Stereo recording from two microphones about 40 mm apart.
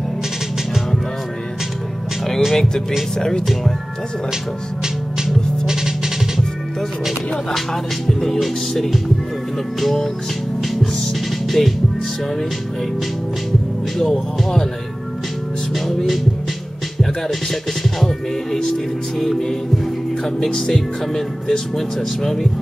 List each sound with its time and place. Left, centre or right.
2.5 s speech: centre
5.7 s music: centre
7.5 s speech: centre
9.8 s music: centre
11.4 s speech: centre
13.9 s speech: centre
15.7 s music: centre
17.0 s speech: centre
19.1 s music: centre
20.3 s speech: centre